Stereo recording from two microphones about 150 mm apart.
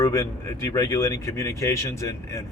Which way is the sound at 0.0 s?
20° left (ahead or behind).